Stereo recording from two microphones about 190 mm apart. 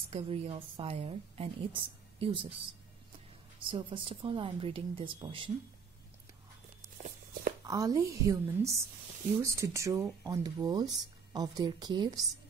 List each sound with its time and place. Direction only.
0.1 s a woman's voice: 30° right (ahead or behind)
7.6 s a woman's voice: 20° right (ahead or behind)